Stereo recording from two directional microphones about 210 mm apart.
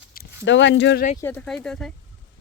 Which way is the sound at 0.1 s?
50° left (ahead or behind).